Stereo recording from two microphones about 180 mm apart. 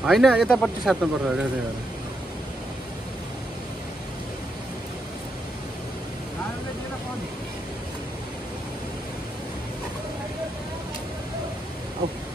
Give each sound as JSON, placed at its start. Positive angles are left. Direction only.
{"t": 0.0, "sound": "speech", "side_deg": 0}